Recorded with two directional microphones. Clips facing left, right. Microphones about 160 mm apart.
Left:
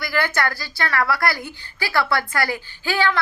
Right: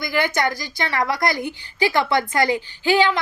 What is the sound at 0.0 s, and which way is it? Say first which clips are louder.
A woman's voice: right 2 dB; 15° right (ahead or behind).